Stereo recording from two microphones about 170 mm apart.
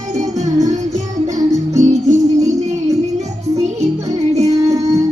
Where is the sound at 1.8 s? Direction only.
40° right (ahead or behind).